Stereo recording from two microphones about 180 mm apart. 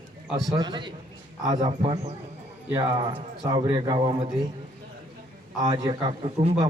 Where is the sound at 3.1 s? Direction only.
25° right (ahead or behind).